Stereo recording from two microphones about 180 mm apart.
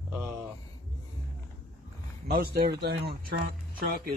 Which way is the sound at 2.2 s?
60° right (ahead or behind).